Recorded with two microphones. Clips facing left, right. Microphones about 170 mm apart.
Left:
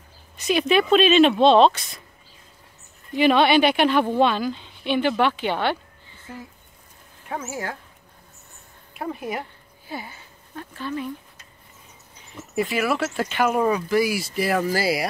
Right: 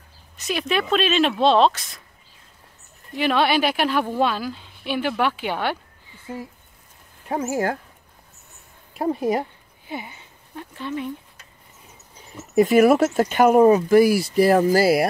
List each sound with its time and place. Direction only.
0.4 s a woman's voice: centre (ahead or behind)
3.2 s a woman's voice: centre (ahead or behind)
7.2 s speech: 35° right (ahead or behind)
8.9 s speech: 35° right (ahead or behind)
9.8 s speech: 20° right (ahead or behind)
12.5 s speech: 45° right (ahead or behind)